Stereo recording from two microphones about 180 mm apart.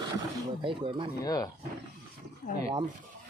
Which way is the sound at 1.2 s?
20° left (ahead or behind).